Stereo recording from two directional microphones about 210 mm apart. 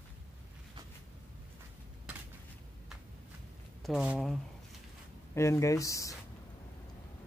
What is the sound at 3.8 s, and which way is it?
Speech, 5° right (ahead or behind).